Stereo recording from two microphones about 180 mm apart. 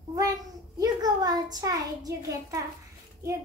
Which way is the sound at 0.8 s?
20° right (ahead or behind).